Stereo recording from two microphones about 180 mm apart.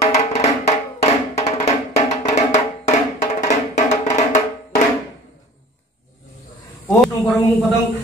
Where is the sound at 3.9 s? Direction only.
40° left (ahead or behind).